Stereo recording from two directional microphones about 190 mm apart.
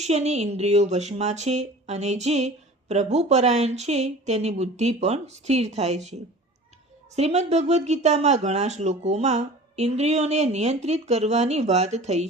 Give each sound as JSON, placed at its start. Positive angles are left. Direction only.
{"t": 0.0, "sound": "speech", "side_deg": -35}
{"t": 7.2, "sound": "speech", "side_deg": -35}